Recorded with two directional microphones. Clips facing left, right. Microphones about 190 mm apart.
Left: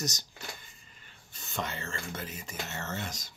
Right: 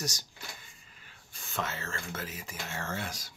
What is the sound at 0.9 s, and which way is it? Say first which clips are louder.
Whispering: even; 5° right (ahead or behind).